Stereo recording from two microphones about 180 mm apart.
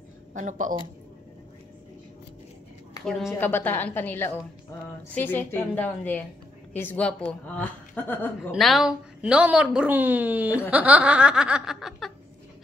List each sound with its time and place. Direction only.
0.3 s speech: 45° right (ahead or behind)
3.3 s a woman's voice: 10° left (ahead or behind)
8.5 s a woman's voice: centre (ahead or behind)
10.7 s snicker: 10° right (ahead or behind)